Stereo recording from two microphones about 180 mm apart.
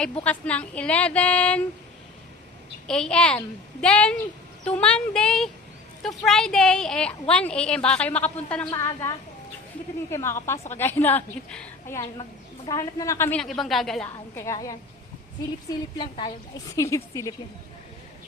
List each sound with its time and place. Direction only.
0.2 s a woman's voice: 10° left (ahead or behind)
2.8 s a woman's voice: 5° left (ahead or behind)
8.7 s a woman's voice: 20° left (ahead or behind)
12.6 s a woman's voice: 20° left (ahead or behind); by 14.1 s centre (ahead or behind)
14.3 s a woman's voice: 15° left (ahead or behind)
16.0 s a woman's voice: 30° left (ahead or behind)
16.7 s a woman's voice: 15° left (ahead or behind)